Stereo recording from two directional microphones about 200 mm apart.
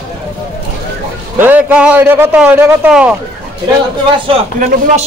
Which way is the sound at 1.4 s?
5° right (ahead or behind).